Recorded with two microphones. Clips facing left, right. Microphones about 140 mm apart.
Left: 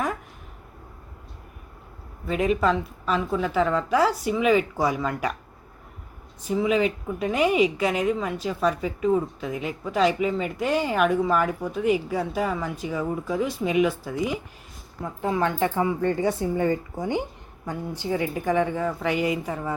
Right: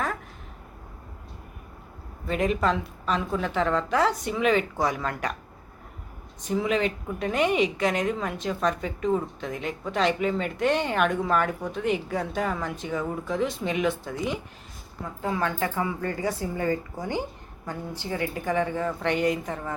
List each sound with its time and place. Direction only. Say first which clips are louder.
2.2 s a woman's voice: left 2 dB; centre (ahead or behind)
6.5 s a woman's voice: left 3 dB; 5° left (ahead or behind)
15.2 s speech: left 4 dB; 20° left (ahead or behind)